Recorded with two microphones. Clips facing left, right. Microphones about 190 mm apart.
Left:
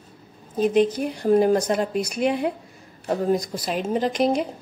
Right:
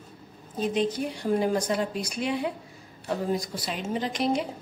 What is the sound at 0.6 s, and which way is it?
Speech, 45° left (ahead or behind).